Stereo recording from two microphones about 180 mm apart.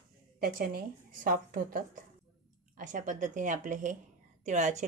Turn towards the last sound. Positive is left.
turn(degrees=-40)  # may be behind; listen again after turning